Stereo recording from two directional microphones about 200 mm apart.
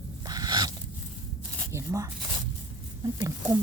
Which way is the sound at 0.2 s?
20° right (ahead or behind).